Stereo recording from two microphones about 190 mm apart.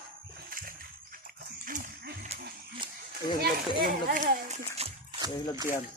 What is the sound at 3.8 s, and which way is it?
Speech, 45° right (ahead or behind).